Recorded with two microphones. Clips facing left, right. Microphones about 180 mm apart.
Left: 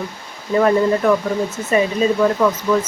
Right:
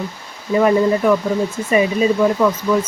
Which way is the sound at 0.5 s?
10° right (ahead or behind).